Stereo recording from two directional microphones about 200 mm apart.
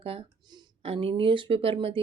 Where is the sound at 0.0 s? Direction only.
25° right (ahead or behind).